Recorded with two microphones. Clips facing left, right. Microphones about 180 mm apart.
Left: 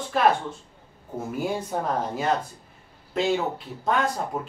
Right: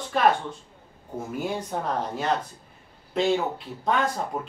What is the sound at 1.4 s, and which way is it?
Speech, 5° left (ahead or behind).